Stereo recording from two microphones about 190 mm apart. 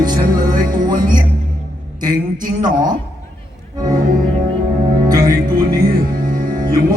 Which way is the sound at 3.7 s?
20° right (ahead or behind).